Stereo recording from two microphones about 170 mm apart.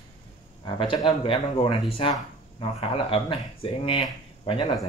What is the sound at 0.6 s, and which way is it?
Speech, 30° left (ahead or behind).